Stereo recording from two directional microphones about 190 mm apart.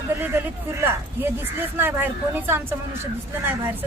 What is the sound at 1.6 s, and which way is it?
A woman's voice, 10° right (ahead or behind).